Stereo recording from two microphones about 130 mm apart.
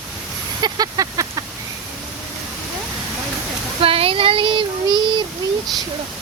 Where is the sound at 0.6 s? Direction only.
30° right (ahead or behind).